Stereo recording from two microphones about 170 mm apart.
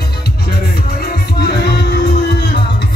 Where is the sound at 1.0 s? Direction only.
70° left (ahead or behind).